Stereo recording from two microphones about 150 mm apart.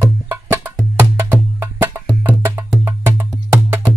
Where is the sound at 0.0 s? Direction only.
15° right (ahead or behind).